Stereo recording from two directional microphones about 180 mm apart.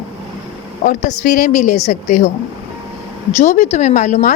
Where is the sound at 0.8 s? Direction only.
45° left (ahead or behind).